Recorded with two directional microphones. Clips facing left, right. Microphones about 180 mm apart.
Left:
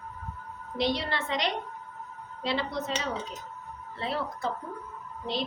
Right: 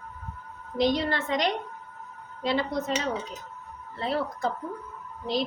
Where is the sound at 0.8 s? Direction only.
45° right (ahead or behind).